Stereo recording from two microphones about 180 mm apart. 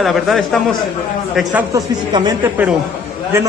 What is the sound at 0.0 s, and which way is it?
Speech, centre (ahead or behind).